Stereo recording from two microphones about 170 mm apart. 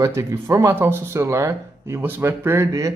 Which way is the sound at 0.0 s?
15° right (ahead or behind).